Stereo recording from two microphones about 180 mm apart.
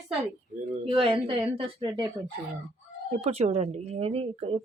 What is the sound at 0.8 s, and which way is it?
Speech, 30° right (ahead or behind).